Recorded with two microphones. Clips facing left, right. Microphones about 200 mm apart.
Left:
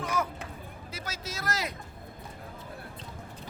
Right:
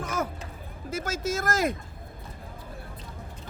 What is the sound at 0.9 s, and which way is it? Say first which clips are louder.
Speech: right 12 dB; 45° right (ahead or behind).